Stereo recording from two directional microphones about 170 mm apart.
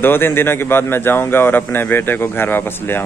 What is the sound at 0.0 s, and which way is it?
A man's voice, 10° left (ahead or behind).